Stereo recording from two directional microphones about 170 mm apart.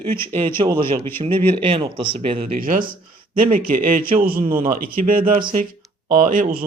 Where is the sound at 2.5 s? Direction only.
55° right (ahead or behind).